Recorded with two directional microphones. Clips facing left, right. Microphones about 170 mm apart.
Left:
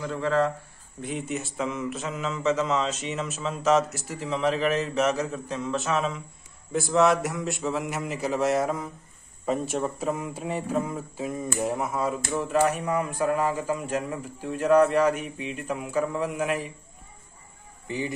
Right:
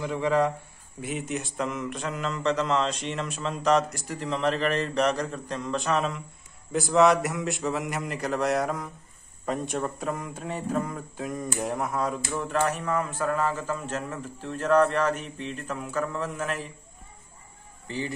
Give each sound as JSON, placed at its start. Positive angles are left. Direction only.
{"t": 0.0, "sound": "speech", "side_deg": -15}
{"t": 1.0, "sound": "speech", "side_deg": 0}
{"t": 17.8, "sound": "speech", "side_deg": 15}